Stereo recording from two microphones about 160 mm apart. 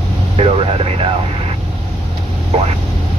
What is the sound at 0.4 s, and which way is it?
Vehicle, 35° right (ahead or behind).